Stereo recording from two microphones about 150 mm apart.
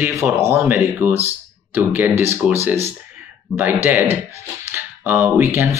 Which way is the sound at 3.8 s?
15° right (ahead or behind).